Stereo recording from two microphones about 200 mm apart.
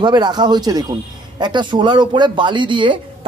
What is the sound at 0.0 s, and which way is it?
A man's voice, 20° right (ahead or behind).